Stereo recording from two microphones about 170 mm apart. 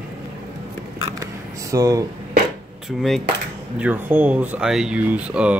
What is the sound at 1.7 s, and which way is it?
Speech, 20° right (ahead or behind).